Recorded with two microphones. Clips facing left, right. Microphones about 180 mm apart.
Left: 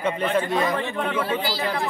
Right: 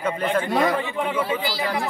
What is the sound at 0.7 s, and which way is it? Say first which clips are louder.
Speech: right 1 dB; 10° right (ahead or behind).